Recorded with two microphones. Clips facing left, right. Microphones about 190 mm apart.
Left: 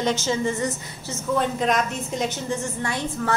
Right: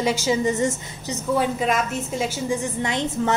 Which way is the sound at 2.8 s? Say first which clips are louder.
Right 3 dB; 20° right (ahead or behind).